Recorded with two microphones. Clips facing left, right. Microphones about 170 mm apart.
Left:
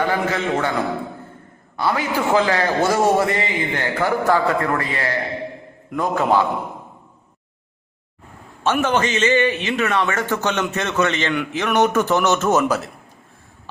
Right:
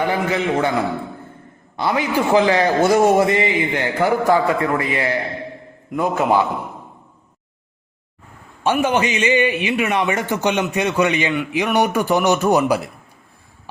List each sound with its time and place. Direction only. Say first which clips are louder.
0.0 s a man's voice: right 1 dB; 15° right (ahead or behind)
1.7 s a man's voice: right 2 dB; 20° right (ahead or behind)
8.6 s a man's voice: right 1 dB; 10° right (ahead or behind)